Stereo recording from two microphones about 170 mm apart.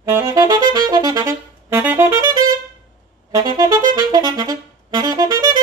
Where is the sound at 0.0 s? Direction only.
15° right (ahead or behind).